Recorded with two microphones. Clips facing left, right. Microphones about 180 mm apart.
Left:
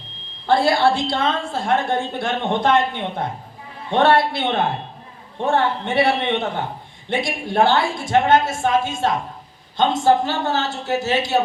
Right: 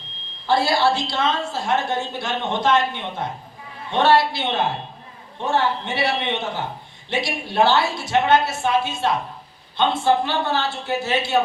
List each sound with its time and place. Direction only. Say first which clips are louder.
0.4 s a woman's voice: left 2 dB; 55° left (ahead or behind)